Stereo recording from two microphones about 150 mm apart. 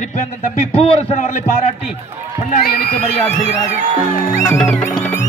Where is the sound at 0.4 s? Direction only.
45° left (ahead or behind).